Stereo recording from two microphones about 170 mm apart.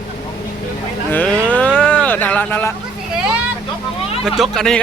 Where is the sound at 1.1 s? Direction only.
10° left (ahead or behind).